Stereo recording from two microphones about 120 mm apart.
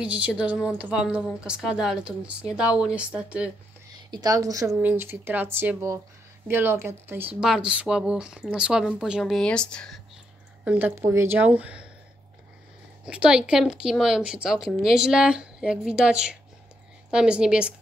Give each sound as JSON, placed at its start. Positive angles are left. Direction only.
{"t": 0.0, "sound": "a woman's voice", "side_deg": -10}
{"t": 4.1, "sound": "a woman's voice", "side_deg": -35}
{"t": 4.7, "sound": "a woman's voice", "side_deg": -15}
{"t": 7.3, "sound": "speech", "side_deg": -5}
{"t": 10.6, "sound": "a woman's voice", "side_deg": -10}
{"t": 11.0, "sound": "a woman's voice", "side_deg": -20}
{"t": 13.0, "sound": "a woman's voice", "side_deg": -10}